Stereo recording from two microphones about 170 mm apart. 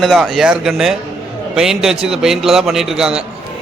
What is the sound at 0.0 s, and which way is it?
A man's voice, centre (ahead or behind).